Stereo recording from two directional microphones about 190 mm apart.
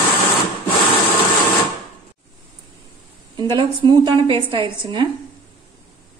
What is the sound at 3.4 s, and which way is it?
Speech, 25° right (ahead or behind).